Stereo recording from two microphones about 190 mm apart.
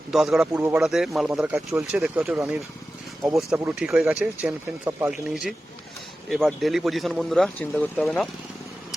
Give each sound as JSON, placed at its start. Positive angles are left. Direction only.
{"t": 0.1, "sound": "a man's voice", "side_deg": 0}
{"t": 3.6, "sound": "a man's voice", "side_deg": -5}